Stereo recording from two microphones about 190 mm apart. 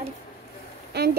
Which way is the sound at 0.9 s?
60° right (ahead or behind).